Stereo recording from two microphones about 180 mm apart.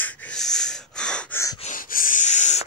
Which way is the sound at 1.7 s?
50° left (ahead or behind).